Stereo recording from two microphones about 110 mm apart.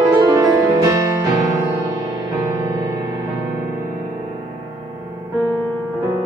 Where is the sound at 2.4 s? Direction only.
35° right (ahead or behind).